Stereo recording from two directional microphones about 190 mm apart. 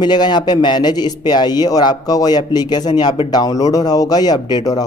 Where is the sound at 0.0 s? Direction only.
20° left (ahead or behind).